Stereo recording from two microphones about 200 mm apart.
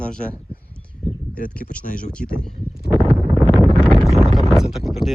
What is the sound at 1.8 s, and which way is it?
Speech, 45° left (ahead or behind).